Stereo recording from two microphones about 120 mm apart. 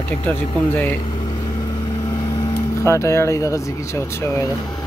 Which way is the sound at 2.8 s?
25° left (ahead or behind).